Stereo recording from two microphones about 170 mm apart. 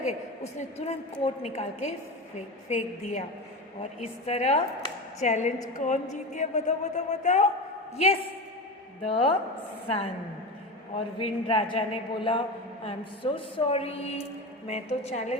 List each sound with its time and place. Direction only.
0.8 s a woman's voice: 40° left (ahead or behind)